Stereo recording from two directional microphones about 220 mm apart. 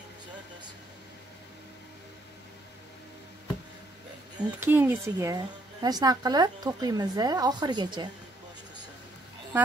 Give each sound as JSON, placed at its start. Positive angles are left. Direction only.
{"t": 4.4, "sound": "speech", "side_deg": -10}